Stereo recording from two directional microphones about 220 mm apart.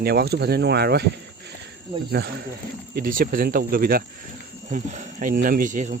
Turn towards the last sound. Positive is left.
turn(degrees=-35)  # may be behind; listen again after turning